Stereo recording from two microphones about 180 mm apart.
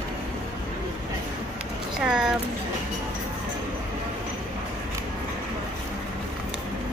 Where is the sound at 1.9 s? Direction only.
5° right (ahead or behind).